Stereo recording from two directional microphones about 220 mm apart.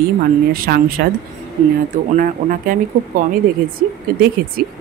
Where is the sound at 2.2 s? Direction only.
40° right (ahead or behind).